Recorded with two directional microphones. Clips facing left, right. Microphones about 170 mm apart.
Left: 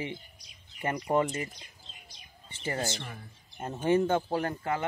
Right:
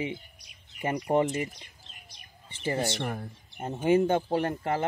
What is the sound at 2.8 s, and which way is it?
Speech, 65° right (ahead or behind).